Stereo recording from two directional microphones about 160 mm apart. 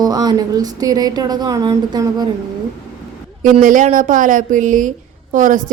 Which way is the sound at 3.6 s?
55° right (ahead or behind).